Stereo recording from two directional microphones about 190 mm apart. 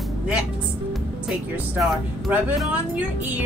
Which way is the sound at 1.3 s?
Centre (ahead or behind).